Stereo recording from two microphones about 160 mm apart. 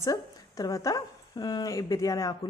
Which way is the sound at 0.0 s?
20° left (ahead or behind).